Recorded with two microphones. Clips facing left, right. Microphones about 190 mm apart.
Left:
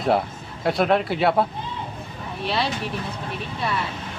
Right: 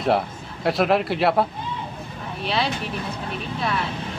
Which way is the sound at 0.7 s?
Centre (ahead or behind).